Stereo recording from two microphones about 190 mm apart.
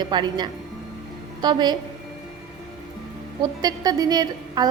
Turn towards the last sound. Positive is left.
turn(degrees=-20)  # may be behind; listen again after turning